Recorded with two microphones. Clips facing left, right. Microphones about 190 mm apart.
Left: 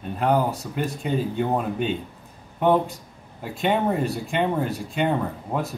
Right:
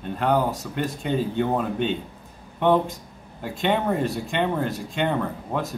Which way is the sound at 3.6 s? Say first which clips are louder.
Left 1 dB; centre (ahead or behind).